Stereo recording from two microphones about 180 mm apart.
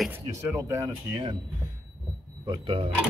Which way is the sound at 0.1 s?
15° right (ahead or behind).